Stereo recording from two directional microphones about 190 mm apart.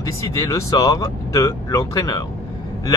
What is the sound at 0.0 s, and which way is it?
Speech, 15° left (ahead or behind).